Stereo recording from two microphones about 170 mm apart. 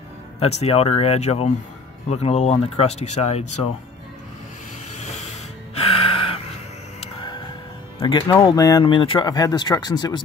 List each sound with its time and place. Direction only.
0.4 s speech: 35° left (ahead or behind)
4.9 s music: 40° left (ahead or behind)
8.0 s speech: 25° left (ahead or behind)